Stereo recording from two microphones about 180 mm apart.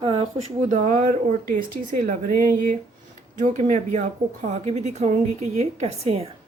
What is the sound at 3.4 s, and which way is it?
Speech, 45° right (ahead or behind).